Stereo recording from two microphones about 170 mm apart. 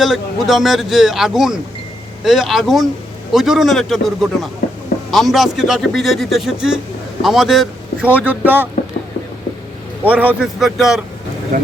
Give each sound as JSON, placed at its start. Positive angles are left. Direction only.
{"t": 0.0, "sound": "a man's voice", "side_deg": 0}
{"t": 4.6, "sound": "a sound", "side_deg": 70}
{"t": 5.1, "sound": "a man's voice", "side_deg": 0}
{"t": 10.0, "sound": "a man's voice", "side_deg": -10}
{"t": 11.5, "sound": "speech", "side_deg": -55}